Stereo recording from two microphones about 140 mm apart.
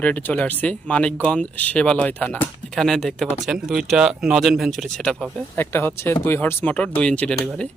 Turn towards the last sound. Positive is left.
turn(degrees=5)  # may be behind; listen again after turning